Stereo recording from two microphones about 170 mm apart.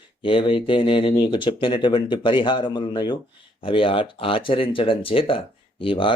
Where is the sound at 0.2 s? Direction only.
30° left (ahead or behind).